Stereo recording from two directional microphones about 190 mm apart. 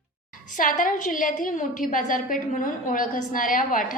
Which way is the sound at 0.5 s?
45° left (ahead or behind).